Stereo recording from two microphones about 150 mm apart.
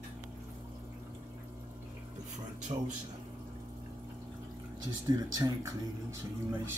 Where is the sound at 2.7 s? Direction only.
45° right (ahead or behind).